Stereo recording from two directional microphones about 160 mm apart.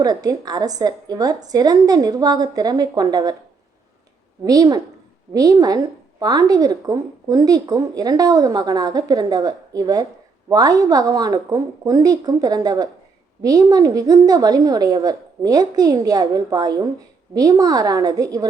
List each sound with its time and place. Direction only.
0.0 s a woman's voice: 25° right (ahead or behind)
4.4 s a woman's voice: 25° right (ahead or behind)